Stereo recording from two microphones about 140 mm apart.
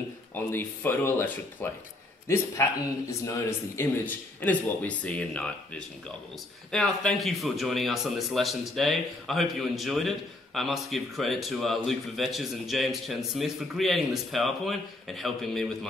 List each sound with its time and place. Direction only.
0.3 s a man's voice: 15° left (ahead or behind)